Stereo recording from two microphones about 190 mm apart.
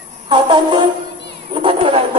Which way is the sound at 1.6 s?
25° right (ahead or behind).